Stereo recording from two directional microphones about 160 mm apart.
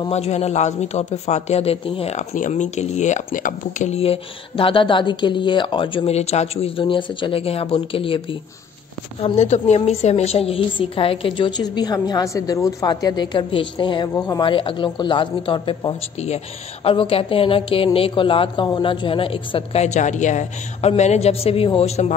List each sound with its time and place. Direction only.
0.1 s a man's voice: 40° left (ahead or behind)